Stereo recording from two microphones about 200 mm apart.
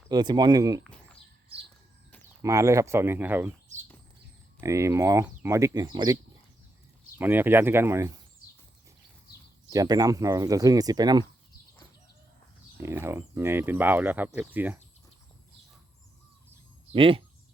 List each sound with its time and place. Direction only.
0.1 s speech: 20° right (ahead or behind)
2.4 s speech: 15° right (ahead or behind)
4.6 s speech: 15° right (ahead or behind)
7.2 s speech: 10° right (ahead or behind)
9.6 s speech: 20° right (ahead or behind)
12.7 s speech: 10° right (ahead or behind)
16.9 s speech: 25° right (ahead or behind)